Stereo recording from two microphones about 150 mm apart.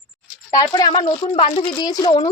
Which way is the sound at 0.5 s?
25° left (ahead or behind).